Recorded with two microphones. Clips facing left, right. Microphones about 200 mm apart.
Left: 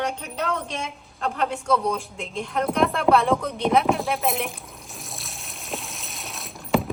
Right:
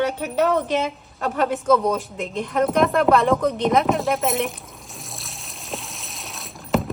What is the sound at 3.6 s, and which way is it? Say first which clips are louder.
Pour: right 2 dB; centre (ahead or behind).